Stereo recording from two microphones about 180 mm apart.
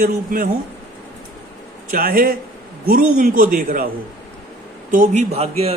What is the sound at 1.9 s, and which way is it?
A man's voice, 50° right (ahead or behind).